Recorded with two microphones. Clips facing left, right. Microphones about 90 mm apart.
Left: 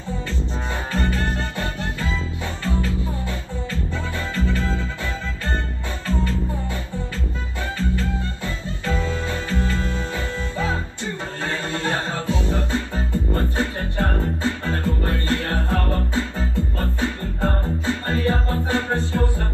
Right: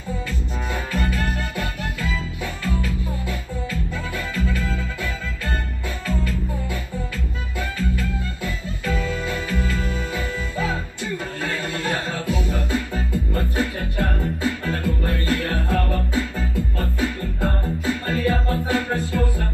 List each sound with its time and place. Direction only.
0.9 s music: 30° left (ahead or behind)
6.0 s music: 30° left (ahead or behind)